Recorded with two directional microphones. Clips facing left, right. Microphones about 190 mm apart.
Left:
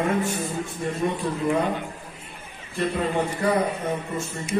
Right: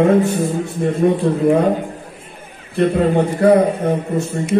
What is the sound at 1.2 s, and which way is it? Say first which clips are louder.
Speech: right 10 dB; 55° right (ahead or behind).